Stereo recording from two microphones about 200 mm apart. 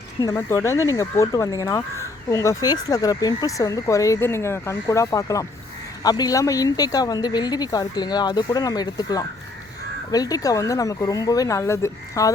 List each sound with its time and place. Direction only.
0.2 s speech: 15° left (ahead or behind)